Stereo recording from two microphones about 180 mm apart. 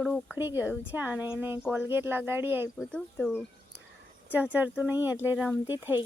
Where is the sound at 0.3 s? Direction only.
10° right (ahead or behind).